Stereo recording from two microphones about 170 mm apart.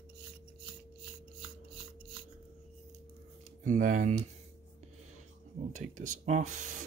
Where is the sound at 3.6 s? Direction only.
50° right (ahead or behind).